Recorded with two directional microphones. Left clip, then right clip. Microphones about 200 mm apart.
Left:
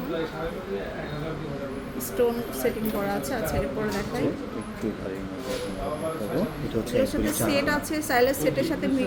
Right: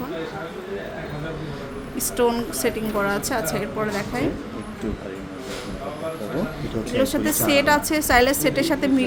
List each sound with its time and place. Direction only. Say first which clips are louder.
2.1 s a woman's voice: right 3 dB; 40° right (ahead or behind)
6.9 s a woman's voice: right 4 dB; 30° right (ahead or behind)